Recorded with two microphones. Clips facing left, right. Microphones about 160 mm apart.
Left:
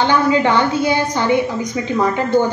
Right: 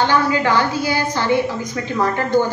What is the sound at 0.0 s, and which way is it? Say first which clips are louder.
A woman's voice: left 2 dB; 20° left (ahead or behind).